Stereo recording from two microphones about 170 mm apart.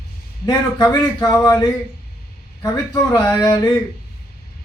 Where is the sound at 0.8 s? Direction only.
20° left (ahead or behind).